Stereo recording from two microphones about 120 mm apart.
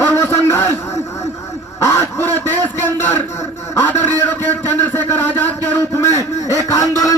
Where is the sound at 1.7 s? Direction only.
25° left (ahead or behind).